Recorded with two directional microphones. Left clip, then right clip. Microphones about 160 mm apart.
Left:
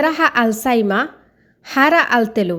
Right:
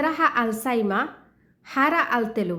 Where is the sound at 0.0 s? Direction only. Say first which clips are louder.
Left 6 dB; 35° left (ahead or behind).